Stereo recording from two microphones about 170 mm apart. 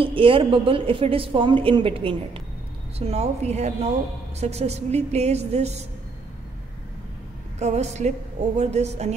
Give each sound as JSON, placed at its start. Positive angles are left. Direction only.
{"t": 0.0, "sound": "a woman's voice", "side_deg": -30}
{"t": 7.5, "sound": "a woman's voice", "side_deg": -40}